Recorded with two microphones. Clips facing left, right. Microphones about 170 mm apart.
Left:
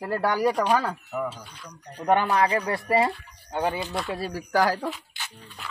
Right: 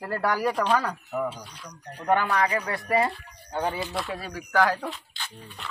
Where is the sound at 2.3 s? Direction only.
30° left (ahead or behind).